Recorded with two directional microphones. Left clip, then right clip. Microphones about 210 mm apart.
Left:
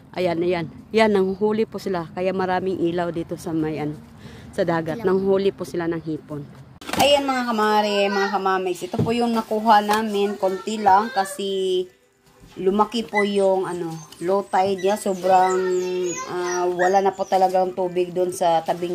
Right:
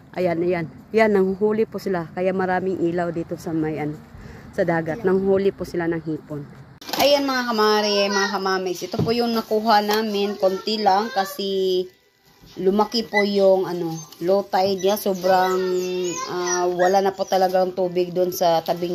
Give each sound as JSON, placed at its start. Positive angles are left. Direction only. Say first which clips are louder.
{"t": 0.1, "sound": "speech", "louder": "even", "side_deg": 0}
{"t": 2.7, "sound": "a woman's voice", "louder": "even", "side_deg": 10}
{"t": 11.5, "sound": "speech", "louder": "right 1 dB", "side_deg": 15}
{"t": 13.6, "sound": "speech", "louder": "right 1 dB", "side_deg": -10}